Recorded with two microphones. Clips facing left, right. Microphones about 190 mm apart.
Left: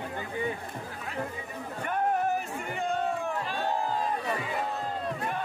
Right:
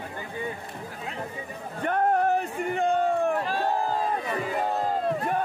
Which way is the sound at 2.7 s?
55° right (ahead or behind).